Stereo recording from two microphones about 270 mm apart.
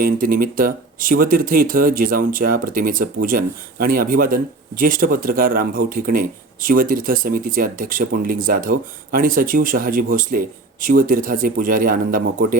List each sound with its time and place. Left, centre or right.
0.0 s speech: right